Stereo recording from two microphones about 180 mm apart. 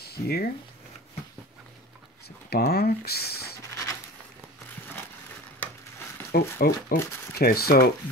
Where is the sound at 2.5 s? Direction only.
60° left (ahead or behind).